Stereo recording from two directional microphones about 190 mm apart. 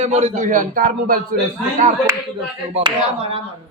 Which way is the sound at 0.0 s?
35° right (ahead or behind).